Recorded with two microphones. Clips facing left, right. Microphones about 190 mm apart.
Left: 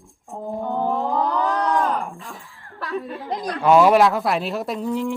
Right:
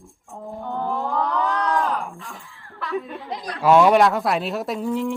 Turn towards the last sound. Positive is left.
turn(degrees=0)  # may be behind; listen again after turning